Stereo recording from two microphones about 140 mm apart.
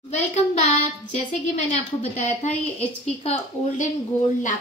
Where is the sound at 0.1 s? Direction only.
55° left (ahead or behind).